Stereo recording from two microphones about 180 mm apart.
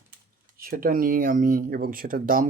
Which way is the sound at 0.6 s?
50° right (ahead or behind).